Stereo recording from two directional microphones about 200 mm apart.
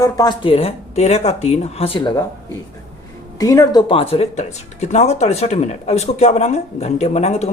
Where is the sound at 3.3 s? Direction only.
15° left (ahead or behind).